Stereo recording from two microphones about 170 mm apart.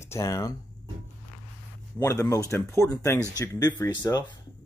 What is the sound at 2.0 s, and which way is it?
Speech, 15° left (ahead or behind).